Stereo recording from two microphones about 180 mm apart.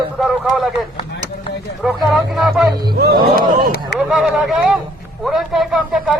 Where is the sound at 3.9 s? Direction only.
Centre (ahead or behind).